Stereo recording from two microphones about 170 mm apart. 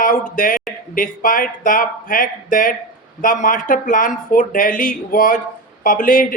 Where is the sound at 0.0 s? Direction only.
55° left (ahead or behind).